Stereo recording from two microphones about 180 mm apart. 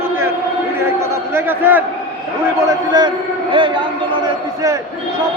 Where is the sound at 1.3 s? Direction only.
10° right (ahead or behind).